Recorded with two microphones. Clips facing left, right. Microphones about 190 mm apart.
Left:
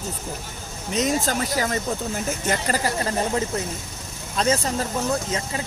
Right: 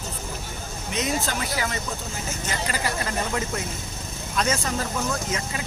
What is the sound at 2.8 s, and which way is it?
Speech, 35° left (ahead or behind).